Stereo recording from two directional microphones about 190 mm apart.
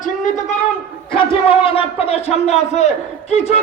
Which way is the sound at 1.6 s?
30° left (ahead or behind).